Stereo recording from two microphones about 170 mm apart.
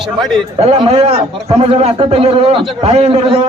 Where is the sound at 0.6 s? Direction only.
35° right (ahead or behind).